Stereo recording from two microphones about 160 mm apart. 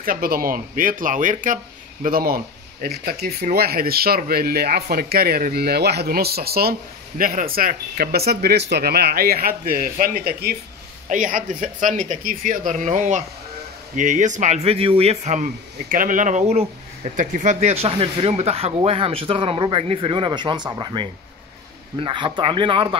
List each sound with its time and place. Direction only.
0.0 s speech: 65° right (ahead or behind)
2.0 s speech: 65° right (ahead or behind)
7.2 s speech: 65° right (ahead or behind)
11.1 s speech: 55° right (ahead or behind); by 22.9 s 30° right (ahead or behind)